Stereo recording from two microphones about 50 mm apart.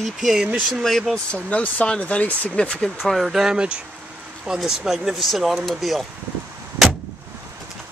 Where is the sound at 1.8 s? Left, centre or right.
Left.